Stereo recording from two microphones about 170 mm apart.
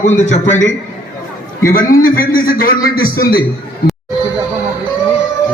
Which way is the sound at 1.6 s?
55° left (ahead or behind).